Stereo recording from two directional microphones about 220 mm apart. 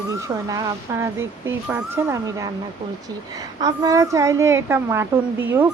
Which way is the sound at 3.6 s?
15° right (ahead or behind).